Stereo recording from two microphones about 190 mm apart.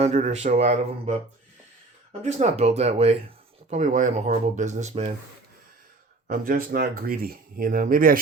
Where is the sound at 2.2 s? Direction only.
35° right (ahead or behind).